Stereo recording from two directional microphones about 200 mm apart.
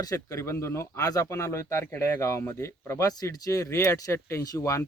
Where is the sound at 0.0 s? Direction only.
15° left (ahead or behind).